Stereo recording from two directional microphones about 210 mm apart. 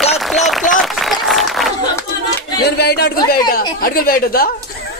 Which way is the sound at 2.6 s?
50° left (ahead or behind).